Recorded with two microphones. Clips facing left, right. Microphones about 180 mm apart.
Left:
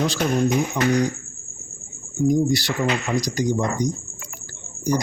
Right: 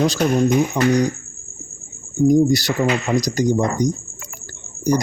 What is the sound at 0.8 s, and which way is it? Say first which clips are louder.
Speech: right 2 dB; 40° right (ahead or behind).